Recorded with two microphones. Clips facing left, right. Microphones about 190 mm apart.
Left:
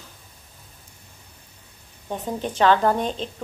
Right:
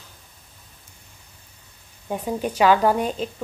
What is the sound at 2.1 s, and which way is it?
A woman's voice, 10° right (ahead or behind).